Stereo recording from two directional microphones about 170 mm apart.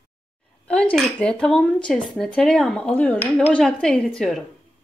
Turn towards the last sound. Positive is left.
turn(degrees=0)  # may be behind; listen again after turning